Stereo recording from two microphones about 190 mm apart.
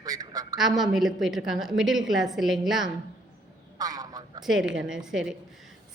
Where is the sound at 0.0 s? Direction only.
20° right (ahead or behind).